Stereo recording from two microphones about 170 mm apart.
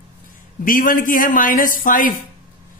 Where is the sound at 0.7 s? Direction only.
50° left (ahead or behind).